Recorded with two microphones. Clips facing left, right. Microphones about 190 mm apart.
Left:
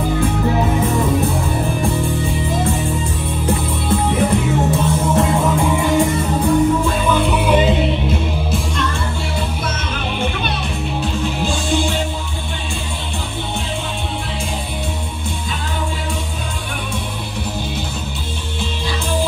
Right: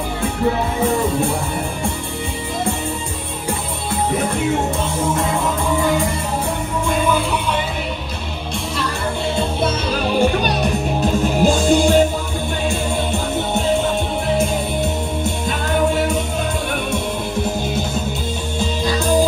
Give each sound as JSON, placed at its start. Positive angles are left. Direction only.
{"t": 10.1, "sound": "music", "side_deg": -40}